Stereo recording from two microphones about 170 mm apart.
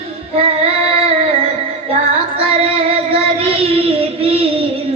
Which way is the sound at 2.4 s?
35° right (ahead or behind).